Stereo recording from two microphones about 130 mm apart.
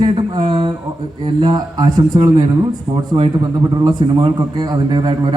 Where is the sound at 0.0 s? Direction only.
40° right (ahead or behind).